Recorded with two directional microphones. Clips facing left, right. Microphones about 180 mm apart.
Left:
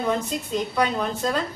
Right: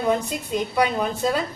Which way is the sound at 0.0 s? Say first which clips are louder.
Right 2 dB; 10° right (ahead or behind).